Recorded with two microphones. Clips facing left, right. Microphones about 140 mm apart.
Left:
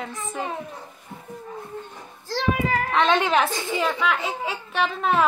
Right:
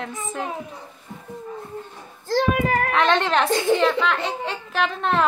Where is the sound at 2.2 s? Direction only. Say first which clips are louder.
Right 4 dB; 50° right (ahead or behind).